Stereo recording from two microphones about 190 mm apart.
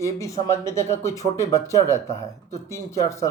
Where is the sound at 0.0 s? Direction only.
15° left (ahead or behind).